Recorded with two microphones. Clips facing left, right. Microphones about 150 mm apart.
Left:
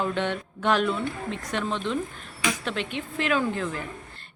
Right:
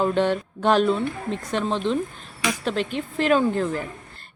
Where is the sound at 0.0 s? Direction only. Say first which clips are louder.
Right 6 dB; 35° right (ahead or behind).